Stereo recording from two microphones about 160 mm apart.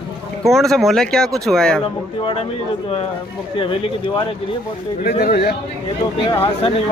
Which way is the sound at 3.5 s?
35° left (ahead or behind).